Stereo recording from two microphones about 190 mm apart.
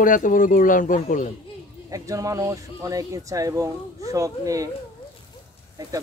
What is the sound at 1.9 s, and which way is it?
Speech, 15° right (ahead or behind).